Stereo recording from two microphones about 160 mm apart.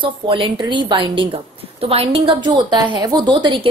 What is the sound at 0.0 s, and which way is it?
A woman's voice, 30° right (ahead or behind).